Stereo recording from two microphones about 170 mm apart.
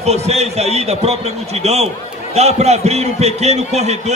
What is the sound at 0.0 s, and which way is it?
A man's voice, 40° right (ahead or behind).